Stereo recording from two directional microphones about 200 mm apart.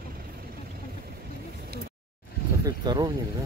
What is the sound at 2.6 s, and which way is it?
Speech, 20° right (ahead or behind).